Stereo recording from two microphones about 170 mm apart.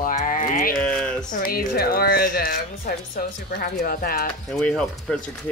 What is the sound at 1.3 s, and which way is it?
A woman's voice, 60° left (ahead or behind).